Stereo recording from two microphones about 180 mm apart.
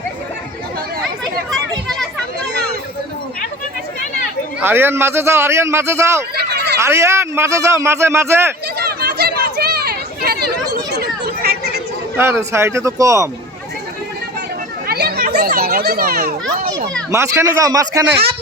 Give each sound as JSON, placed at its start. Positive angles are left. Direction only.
{"t": 1.5, "sound": "children playing", "side_deg": 0}
{"t": 4.6, "sound": "a man's voice", "side_deg": -10}
{"t": 6.3, "sound": "a sound", "side_deg": -65}
{"t": 6.7, "sound": "a man's voice", "side_deg": -15}
{"t": 8.8, "sound": "chatter", "side_deg": -60}
{"t": 12.1, "sound": "a man's voice", "side_deg": -10}
{"t": 14.8, "sound": "a child's voice", "side_deg": -60}
{"t": 17.1, "sound": "a man's voice", "side_deg": -15}
{"t": 18.1, "sound": "speech", "side_deg": -60}